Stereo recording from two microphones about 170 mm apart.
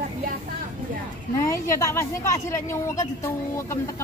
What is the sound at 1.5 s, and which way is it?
A woman's voice, 15° left (ahead or behind).